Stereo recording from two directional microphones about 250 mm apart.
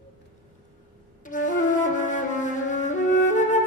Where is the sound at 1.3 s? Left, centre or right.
Left.